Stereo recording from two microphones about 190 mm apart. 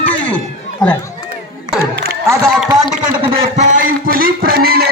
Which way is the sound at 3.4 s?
40° right (ahead or behind).